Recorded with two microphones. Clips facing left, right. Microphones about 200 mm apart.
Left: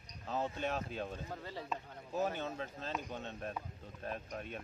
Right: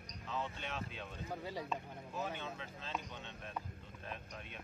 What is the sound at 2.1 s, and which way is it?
Speech, 40° left (ahead or behind).